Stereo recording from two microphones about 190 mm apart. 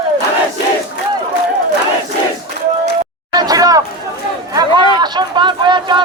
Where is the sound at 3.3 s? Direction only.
20° right (ahead or behind).